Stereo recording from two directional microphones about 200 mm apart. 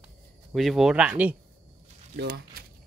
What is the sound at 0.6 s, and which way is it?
Speech, centre (ahead or behind).